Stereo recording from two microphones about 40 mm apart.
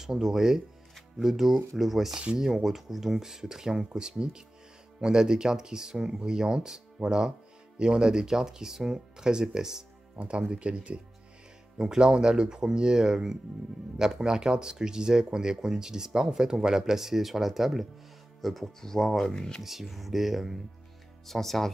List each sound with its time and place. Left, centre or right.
0.0 s speech: centre
10.2 s speech: right; by 19.6 s centre
19.6 s speech: centre
21.3 s speech: centre